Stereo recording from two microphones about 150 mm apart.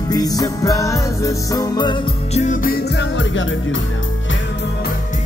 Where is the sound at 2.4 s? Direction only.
60° left (ahead or behind).